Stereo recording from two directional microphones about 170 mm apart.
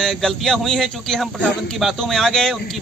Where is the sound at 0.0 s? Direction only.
Centre (ahead or behind).